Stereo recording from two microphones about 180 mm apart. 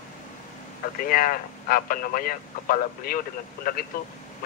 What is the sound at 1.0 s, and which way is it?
Speech, 50° left (ahead or behind).